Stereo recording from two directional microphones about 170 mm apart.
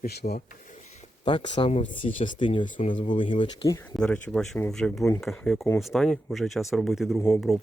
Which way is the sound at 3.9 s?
5° left (ahead or behind).